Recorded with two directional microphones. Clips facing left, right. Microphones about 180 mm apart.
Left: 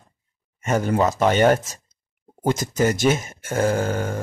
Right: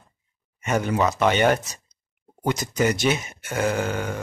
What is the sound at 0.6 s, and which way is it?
Speech, 45° left (ahead or behind).